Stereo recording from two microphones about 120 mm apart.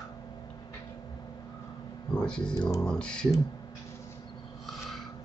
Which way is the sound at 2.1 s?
5° left (ahead or behind).